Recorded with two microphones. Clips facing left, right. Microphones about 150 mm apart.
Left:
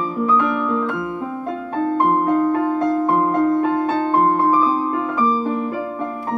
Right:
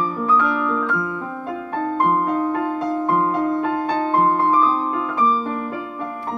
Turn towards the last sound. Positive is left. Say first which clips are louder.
# left 1 dB
turn(degrees=5)  # may be behind; listen again after turning